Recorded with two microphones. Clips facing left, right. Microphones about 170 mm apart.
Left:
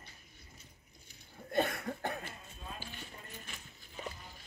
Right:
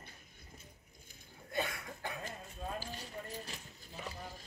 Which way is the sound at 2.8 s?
40° right (ahead or behind).